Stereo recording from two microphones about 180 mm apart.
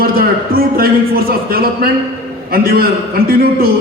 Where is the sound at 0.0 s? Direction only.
55° right (ahead or behind).